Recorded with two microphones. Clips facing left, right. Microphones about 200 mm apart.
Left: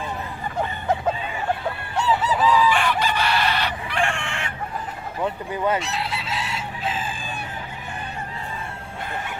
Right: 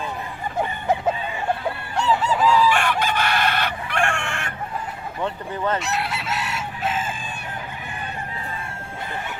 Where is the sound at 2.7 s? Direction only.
55° right (ahead or behind).